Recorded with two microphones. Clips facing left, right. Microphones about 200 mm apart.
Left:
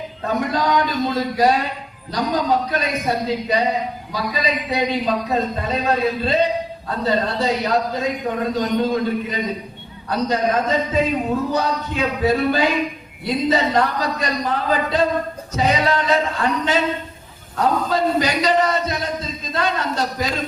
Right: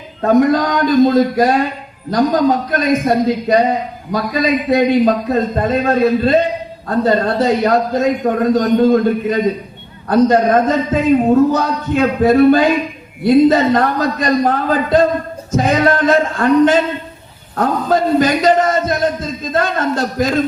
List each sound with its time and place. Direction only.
0.2 s a man's voice: 50° right (ahead or behind)